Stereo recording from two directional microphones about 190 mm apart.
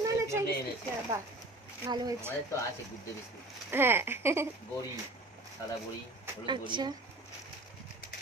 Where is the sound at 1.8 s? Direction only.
20° right (ahead or behind).